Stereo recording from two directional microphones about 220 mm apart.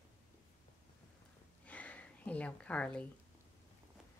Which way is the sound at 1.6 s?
5° left (ahead or behind).